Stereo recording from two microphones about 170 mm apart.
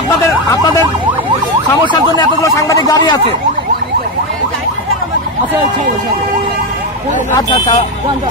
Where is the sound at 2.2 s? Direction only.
20° left (ahead or behind).